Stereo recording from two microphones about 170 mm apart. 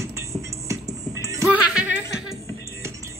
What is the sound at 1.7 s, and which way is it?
Music, 5° right (ahead or behind).